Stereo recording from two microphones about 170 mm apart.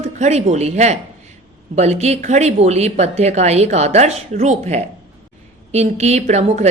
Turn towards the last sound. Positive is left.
turn(degrees=-40)  # may be behind; listen again after turning